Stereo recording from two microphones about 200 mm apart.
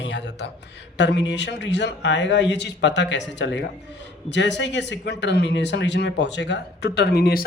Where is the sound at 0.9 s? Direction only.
60° left (ahead or behind).